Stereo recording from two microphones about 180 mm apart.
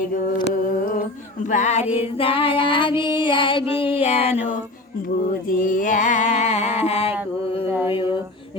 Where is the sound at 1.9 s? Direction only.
10° right (ahead or behind).